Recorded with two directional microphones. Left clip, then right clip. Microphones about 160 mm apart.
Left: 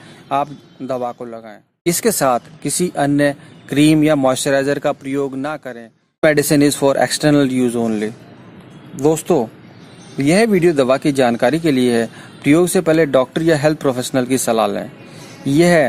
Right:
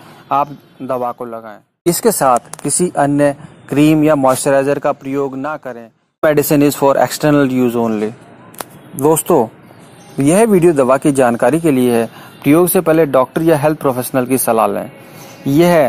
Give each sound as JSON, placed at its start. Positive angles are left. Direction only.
{"t": 0.3, "sound": "speech", "side_deg": 0}
{"t": 1.9, "sound": "speech", "side_deg": -10}
{"t": 8.9, "sound": "speech", "side_deg": -20}